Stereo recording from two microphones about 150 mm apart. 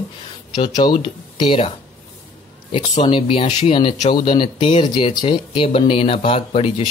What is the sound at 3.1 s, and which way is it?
Speech, 35° left (ahead or behind).